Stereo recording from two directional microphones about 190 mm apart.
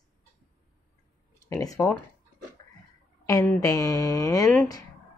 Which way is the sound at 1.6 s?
15° left (ahead or behind).